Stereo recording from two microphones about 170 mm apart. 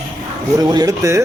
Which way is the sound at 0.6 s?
25° right (ahead or behind).